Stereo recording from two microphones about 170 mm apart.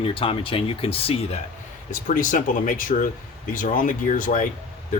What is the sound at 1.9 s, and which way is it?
Speech, 50° left (ahead or behind).